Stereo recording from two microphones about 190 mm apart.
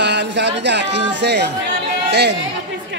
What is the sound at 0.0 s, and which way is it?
Speech, 65° right (ahead or behind).